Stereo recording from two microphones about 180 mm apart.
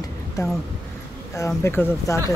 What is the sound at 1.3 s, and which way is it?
Speech, 15° left (ahead or behind).